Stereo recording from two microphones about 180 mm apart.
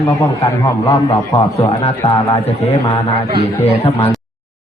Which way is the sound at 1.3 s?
35° left (ahead or behind).